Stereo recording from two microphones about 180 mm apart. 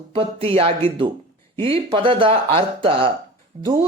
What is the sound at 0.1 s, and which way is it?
A man's voice, 30° right (ahead or behind).